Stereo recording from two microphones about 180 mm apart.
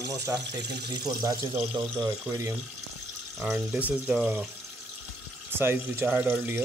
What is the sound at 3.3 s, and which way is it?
Speech, 5° right (ahead or behind).